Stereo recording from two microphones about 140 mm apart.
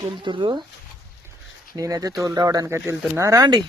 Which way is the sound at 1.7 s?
25° right (ahead or behind).